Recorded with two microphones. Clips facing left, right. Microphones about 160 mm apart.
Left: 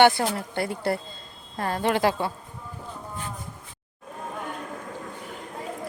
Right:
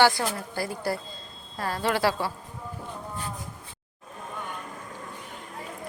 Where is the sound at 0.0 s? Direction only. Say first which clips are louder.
Left 3 dB; 25° left (ahead or behind).